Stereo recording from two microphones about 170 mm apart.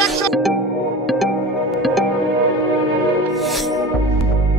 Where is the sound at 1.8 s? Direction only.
Centre (ahead or behind).